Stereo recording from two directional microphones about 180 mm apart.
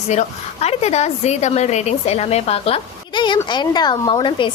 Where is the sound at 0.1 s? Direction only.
35° left (ahead or behind).